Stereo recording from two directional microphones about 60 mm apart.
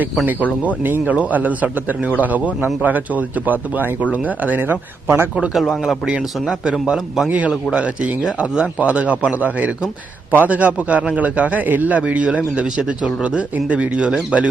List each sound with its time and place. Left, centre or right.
0.8 s speech: right
5.5 s speech: centre
6.1 s speech: centre
7.3 s speech: right